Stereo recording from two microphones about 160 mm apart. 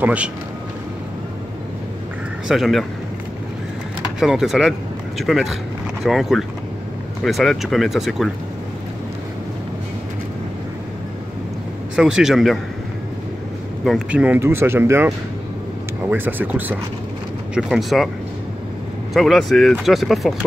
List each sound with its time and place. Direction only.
0.0 s speech: 10° right (ahead or behind)
2.4 s speech: centre (ahead or behind)
4.2 s speech: 5° right (ahead or behind)
11.9 s speech: 5° right (ahead or behind)
13.8 s speech: 5° right (ahead or behind)
19.1 s speech: centre (ahead or behind)